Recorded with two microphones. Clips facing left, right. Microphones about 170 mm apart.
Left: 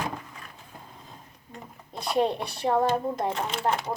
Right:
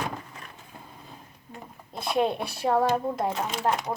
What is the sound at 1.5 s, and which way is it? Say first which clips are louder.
Speech: right 1 dB; centre (ahead or behind).